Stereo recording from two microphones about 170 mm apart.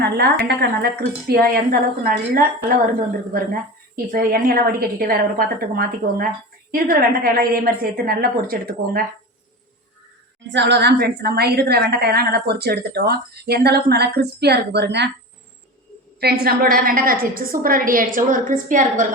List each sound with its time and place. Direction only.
0.0 s a woman's voice: 70° right (ahead or behind)
10.5 s a woman's voice: 90° right
16.2 s a woman's voice: 70° right (ahead or behind); by 19.0 s 50° right (ahead or behind)